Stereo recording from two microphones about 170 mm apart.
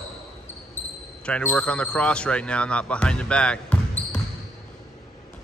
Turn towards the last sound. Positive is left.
turn(degrees=5)  # may be behind; listen again after turning